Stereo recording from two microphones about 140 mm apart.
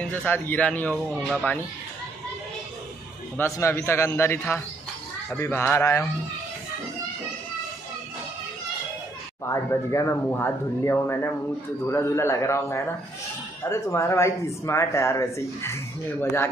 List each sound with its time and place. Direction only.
0.0 s speech: 10° left (ahead or behind)
3.3 s a man's voice: 20° left (ahead or behind)
9.5 s a man's voice: 20° left (ahead or behind)